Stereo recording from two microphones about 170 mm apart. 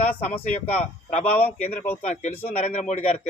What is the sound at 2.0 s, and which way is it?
Speech, 45° left (ahead or behind).